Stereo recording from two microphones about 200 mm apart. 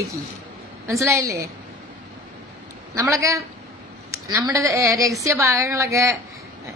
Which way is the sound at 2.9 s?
15° right (ahead or behind).